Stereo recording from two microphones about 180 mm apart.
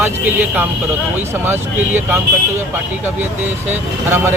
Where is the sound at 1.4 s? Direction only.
10° right (ahead or behind).